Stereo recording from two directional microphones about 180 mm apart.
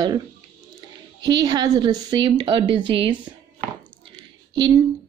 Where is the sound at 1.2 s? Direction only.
20° right (ahead or behind).